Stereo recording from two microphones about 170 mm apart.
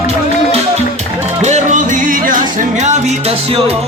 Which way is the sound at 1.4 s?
45° right (ahead or behind).